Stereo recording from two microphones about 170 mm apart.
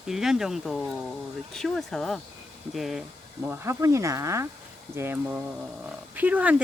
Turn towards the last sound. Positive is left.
turn(degrees=-10)  # may be behind; listen again after turning